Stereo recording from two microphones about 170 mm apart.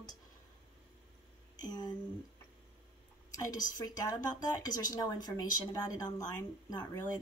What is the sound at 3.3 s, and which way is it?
Speech, 20° left (ahead or behind).